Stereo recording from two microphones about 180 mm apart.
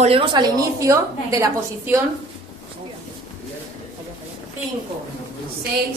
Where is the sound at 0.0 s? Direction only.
30° right (ahead or behind).